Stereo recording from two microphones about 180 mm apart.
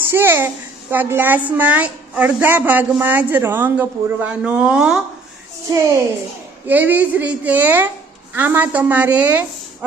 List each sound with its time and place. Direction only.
0.0 s a child's voice: 10° right (ahead or behind)
5.6 s a child's voice: 15° right (ahead or behind)